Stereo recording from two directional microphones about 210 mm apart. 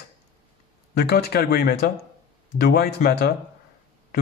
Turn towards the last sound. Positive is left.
turn(degrees=50)  # may be behind; listen again after turning